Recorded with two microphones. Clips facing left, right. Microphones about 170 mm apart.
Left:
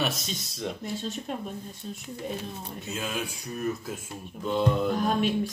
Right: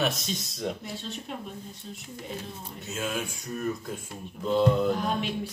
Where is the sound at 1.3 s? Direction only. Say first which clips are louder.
Left 3 dB; 45° left (ahead or behind).